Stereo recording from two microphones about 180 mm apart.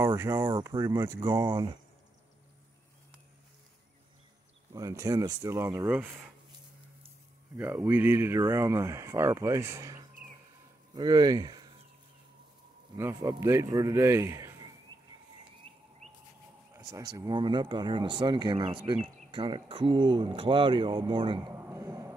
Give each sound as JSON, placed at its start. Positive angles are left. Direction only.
{"t": 0.0, "sound": "speech", "side_deg": -15}
{"t": 4.7, "sound": "speech", "side_deg": -20}
{"t": 7.5, "sound": "speech", "side_deg": -10}
{"t": 12.9, "sound": "speech", "side_deg": -15}
{"t": 15.7, "sound": "bird", "side_deg": -30}
{"t": 16.7, "sound": "speech", "side_deg": -20}
{"t": 21.5, "sound": "a sound", "side_deg": -15}